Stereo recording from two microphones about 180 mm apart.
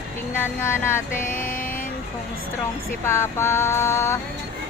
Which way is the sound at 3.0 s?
15° left (ahead or behind).